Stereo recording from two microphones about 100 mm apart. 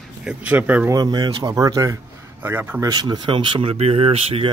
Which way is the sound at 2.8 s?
45° right (ahead or behind).